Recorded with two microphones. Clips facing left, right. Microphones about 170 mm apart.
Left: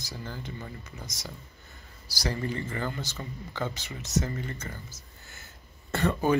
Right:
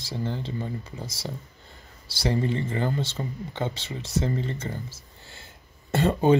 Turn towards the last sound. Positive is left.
turn(degrees=-25)  # may be behind; listen again after turning